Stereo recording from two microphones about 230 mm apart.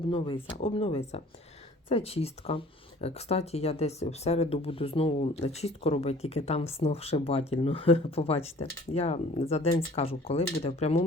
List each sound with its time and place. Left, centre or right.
0.1 s speech: left